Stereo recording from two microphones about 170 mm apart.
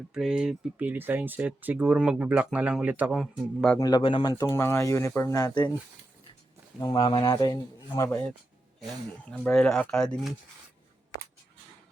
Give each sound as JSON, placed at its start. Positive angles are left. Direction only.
{"t": 0.1, "sound": "speech", "side_deg": -5}
{"t": 3.8, "sound": "speech", "side_deg": 25}
{"t": 6.7, "sound": "speech", "side_deg": 25}
{"t": 9.3, "sound": "speech", "side_deg": 5}